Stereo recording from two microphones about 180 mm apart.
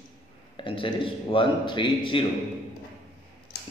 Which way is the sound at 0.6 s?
30° left (ahead or behind).